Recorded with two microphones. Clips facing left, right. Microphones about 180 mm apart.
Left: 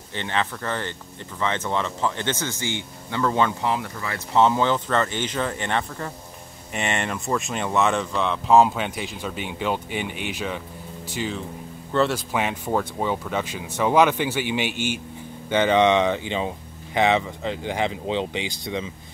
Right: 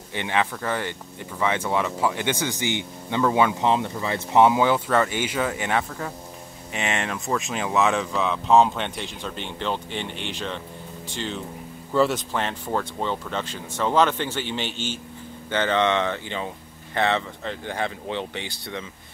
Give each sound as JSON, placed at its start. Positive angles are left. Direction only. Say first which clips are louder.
{"t": 0.1, "sound": "speech", "louder": "right 2 dB", "side_deg": -10}
{"t": 3.6, "sound": "speech", "louder": "right 3 dB", "side_deg": -20}
{"t": 11.9, "sound": "speech", "louder": "right 1 dB", "side_deg": -5}
{"t": 12.3, "sound": "speech", "louder": "left 2 dB", "side_deg": 10}